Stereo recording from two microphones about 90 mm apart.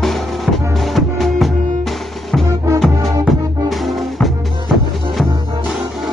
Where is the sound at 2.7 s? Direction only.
Centre (ahead or behind).